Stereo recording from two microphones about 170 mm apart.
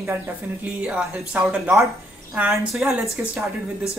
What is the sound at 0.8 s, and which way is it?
Speech, 5° right (ahead or behind).